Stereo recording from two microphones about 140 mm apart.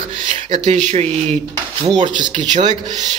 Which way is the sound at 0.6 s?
50° right (ahead or behind).